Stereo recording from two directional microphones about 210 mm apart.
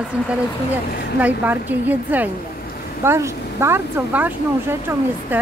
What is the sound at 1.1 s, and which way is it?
Speech, 5° right (ahead or behind).